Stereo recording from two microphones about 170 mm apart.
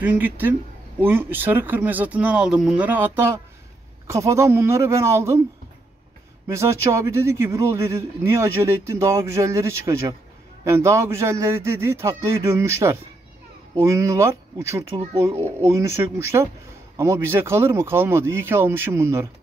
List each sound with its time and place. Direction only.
0.0 s a man's voice: 10° right (ahead or behind)
6.4 s a man's voice: 15° right (ahead or behind)